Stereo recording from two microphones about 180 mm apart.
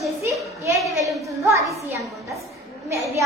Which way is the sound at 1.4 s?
15° right (ahead or behind).